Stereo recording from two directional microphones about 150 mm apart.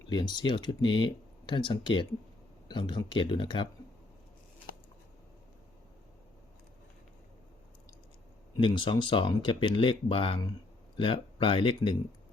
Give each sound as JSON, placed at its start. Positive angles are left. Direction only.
{"t": 0.1, "sound": "speech", "side_deg": 30}
{"t": 8.5, "sound": "speech", "side_deg": 30}